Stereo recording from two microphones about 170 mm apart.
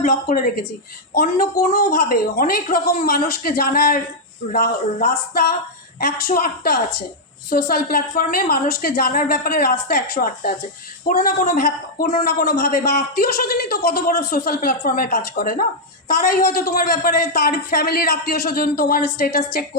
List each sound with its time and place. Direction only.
0.0 s a man's voice: 50° left (ahead or behind)
6.2 s a man's voice: 65° left (ahead or behind)
16.4 s a man's voice: 65° left (ahead or behind)